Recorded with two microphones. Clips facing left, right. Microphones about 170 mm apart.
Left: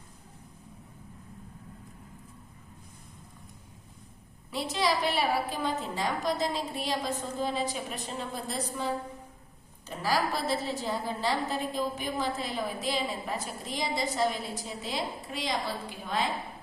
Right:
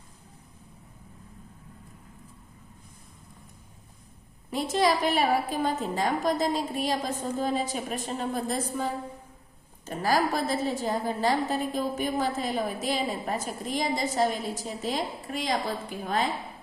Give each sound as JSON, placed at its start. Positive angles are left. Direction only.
{"t": 4.5, "sound": "a woman's voice", "side_deg": -50}